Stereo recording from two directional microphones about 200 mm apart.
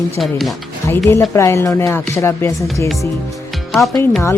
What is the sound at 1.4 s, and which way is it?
Speech, 15° left (ahead or behind).